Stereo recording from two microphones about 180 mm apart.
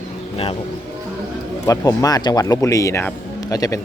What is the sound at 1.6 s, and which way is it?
Speech, 20° left (ahead or behind).